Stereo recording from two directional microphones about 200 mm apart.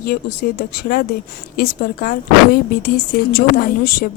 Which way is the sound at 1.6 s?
45° left (ahead or behind).